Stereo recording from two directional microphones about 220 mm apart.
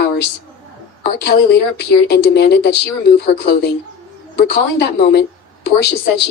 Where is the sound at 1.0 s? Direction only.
45° left (ahead or behind).